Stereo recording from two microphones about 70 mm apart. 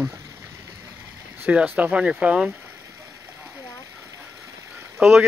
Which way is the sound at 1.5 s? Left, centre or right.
Centre.